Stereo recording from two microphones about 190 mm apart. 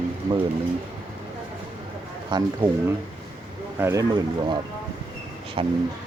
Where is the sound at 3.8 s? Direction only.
15° right (ahead or behind).